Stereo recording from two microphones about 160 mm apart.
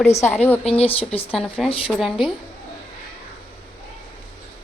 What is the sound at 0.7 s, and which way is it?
Speech, 35° left (ahead or behind).